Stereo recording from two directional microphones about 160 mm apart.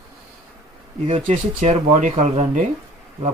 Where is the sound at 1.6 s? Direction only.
40° right (ahead or behind).